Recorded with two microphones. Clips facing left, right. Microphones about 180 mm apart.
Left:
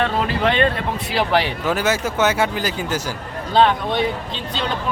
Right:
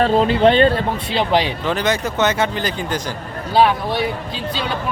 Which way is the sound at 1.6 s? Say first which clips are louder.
Even; 5° left (ahead or behind).